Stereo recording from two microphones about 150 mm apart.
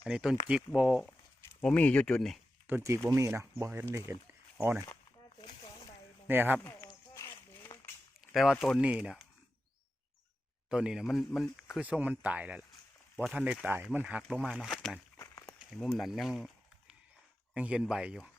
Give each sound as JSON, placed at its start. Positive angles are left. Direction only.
{"t": 0.1, "sound": "speech", "side_deg": -5}
{"t": 1.6, "sound": "speech", "side_deg": 10}
{"t": 2.6, "sound": "speech", "side_deg": -15}
{"t": 6.2, "sound": "speech", "side_deg": -15}
{"t": 6.8, "sound": "a sound", "side_deg": 20}
{"t": 8.3, "sound": "speech", "side_deg": 0}
{"t": 10.7, "sound": "speech", "side_deg": -5}
{"t": 11.8, "sound": "speech", "side_deg": -10}
{"t": 17.5, "sound": "speech", "side_deg": -5}